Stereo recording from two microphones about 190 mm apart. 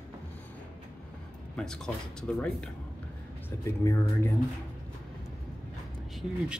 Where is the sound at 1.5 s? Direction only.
5° left (ahead or behind).